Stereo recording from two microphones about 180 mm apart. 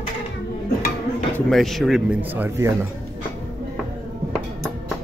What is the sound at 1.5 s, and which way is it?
Speech, centre (ahead or behind).